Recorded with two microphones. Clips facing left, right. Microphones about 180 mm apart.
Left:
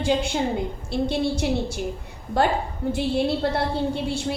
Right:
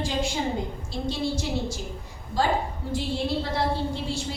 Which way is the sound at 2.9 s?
60° left (ahead or behind).